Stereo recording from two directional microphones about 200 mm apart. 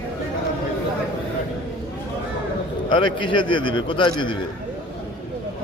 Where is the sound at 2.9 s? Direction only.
25° left (ahead or behind).